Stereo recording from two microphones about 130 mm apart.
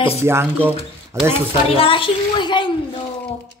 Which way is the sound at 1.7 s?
45° left (ahead or behind).